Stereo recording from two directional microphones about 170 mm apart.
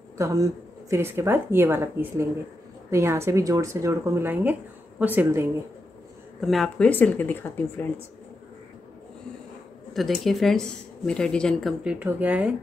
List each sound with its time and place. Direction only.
0.2 s speech: 20° right (ahead or behind)
6.4 s speech: centre (ahead or behind)
9.9 s speech: centre (ahead or behind)